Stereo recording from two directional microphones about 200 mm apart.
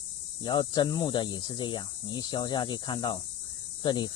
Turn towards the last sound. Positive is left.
turn(degrees=20)  # may be behind; listen again after turning